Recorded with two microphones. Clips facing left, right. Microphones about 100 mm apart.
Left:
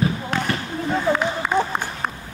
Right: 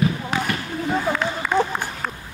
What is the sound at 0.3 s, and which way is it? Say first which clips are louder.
Basketball bounce: even; 5° right (ahead or behind).